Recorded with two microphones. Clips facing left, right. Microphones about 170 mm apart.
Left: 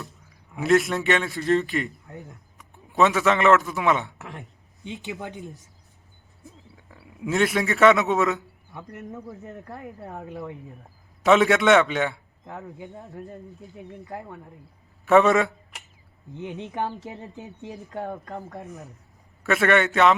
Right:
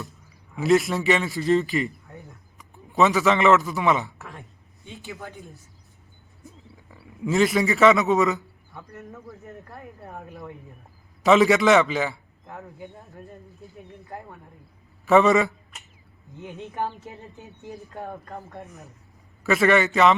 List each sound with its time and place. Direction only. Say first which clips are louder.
0.5 s a man's voice: even; centre (ahead or behind)
4.8 s speech: left 4 dB; 20° left (ahead or behind)
6.9 s a man's voice: right 2 dB; centre (ahead or behind)
8.7 s a man's voice: left 2 dB; 20° left (ahead or behind)
11.2 s a man's voice: right 1 dB; centre (ahead or behind)
15.0 s a man's voice: even; centre (ahead or behind)
16.4 s speech: left 1 dB; 20° left (ahead or behind)
19.4 s a man's voice: right 1 dB; centre (ahead or behind)